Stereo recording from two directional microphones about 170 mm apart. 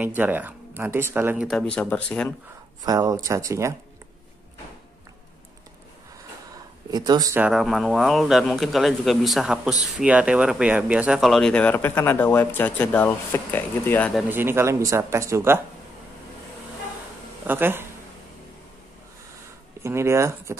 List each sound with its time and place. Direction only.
0.0 s speech: 10° right (ahead or behind)
1.5 s speech: 5° left (ahead or behind)
2.8 s speech: 20° right (ahead or behind)
6.9 s speech: 25° right (ahead or behind)
7.3 s speech: 5° right (ahead or behind); by 14.1 s 10° left (ahead or behind)
14.3 s speech: 15° right (ahead or behind)
17.5 s speech: 10° right (ahead or behind)
19.8 s speech: 15° right (ahead or behind)